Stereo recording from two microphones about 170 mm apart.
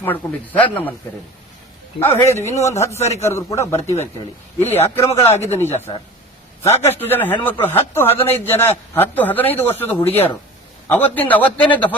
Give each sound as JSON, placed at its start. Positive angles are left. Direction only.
{"t": 0.0, "sound": "a man's voice", "side_deg": 10}
{"t": 2.0, "sound": "a man's voice", "side_deg": 15}
{"t": 5.7, "sound": "speech", "side_deg": 40}
{"t": 6.6, "sound": "a man's voice", "side_deg": 15}